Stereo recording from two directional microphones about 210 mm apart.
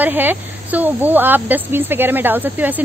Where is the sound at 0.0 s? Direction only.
10° right (ahead or behind).